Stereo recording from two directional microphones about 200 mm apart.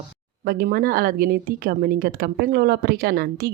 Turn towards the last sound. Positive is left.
turn(degrees=-50)  # may be behind; listen again after turning